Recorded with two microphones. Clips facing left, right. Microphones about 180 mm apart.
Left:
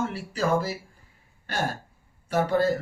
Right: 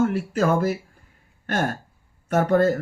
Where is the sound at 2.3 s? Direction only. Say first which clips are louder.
Right 4 dB; 55° right (ahead or behind).